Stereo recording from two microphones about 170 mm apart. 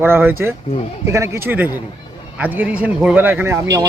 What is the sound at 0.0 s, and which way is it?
Speech, 10° right (ahead or behind).